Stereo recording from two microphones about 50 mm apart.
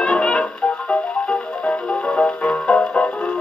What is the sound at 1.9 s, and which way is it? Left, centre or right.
Music, left.